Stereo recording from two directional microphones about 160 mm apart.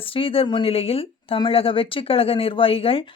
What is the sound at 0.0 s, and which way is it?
A woman's voice, 35° left (ahead or behind).